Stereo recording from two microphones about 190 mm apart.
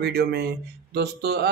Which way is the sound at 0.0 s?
60° right (ahead or behind).